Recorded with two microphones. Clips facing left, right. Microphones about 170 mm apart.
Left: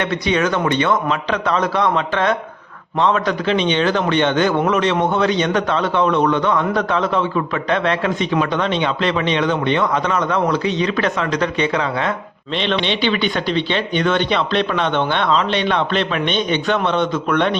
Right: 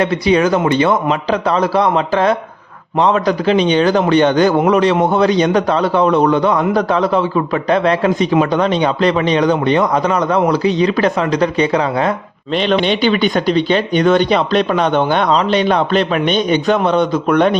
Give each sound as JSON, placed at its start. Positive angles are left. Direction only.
{"t": 0.0, "sound": "a man's voice", "side_deg": -35}